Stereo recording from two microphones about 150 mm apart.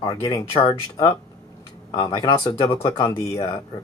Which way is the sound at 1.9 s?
30° left (ahead or behind).